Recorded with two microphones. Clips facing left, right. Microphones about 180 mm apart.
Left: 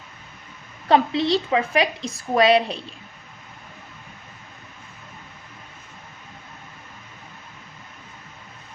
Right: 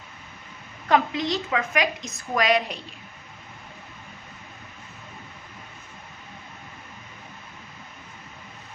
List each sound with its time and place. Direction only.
0.9 s a woman's voice: 30° left (ahead or behind)